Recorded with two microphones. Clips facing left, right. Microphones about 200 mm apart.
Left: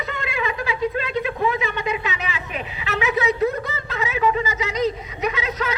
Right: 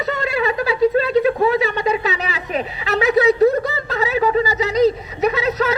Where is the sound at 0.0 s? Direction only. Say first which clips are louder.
Right 6 dB; 40° right (ahead or behind).